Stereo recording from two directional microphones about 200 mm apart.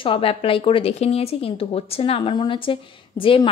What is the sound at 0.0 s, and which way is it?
A woman's voice, 25° left (ahead or behind).